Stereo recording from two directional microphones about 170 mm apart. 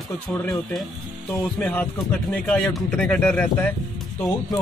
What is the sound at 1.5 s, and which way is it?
Speech, 5° left (ahead or behind).